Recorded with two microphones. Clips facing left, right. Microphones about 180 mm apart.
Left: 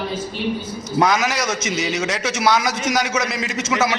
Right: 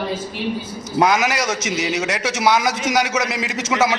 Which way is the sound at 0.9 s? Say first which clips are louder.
Right 1 dB; 10° right (ahead or behind).